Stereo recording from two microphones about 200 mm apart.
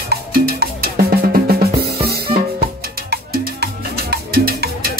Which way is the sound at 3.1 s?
50° right (ahead or behind).